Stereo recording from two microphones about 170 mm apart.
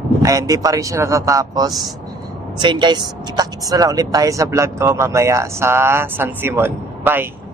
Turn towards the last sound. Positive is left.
turn(degrees=-10)  # may be behind; listen again after turning